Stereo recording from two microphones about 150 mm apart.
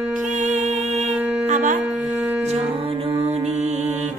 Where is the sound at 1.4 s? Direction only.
55° right (ahead or behind).